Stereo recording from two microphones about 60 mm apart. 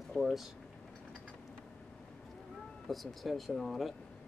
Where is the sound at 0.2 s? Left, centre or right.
Centre.